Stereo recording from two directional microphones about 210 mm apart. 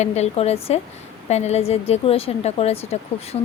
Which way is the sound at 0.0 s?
30° left (ahead or behind).